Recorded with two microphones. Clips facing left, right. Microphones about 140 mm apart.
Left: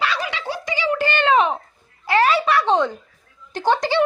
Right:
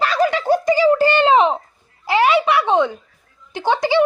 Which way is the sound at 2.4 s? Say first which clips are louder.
Right 2 dB; 10° right (ahead or behind).